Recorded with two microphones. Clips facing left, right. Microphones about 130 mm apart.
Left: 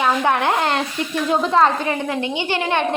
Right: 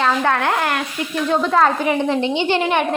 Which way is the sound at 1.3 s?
Centre (ahead or behind).